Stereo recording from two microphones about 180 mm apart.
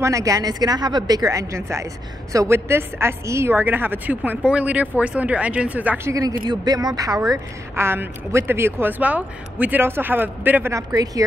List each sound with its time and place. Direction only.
0.0 s a woman's voice: 20° right (ahead or behind)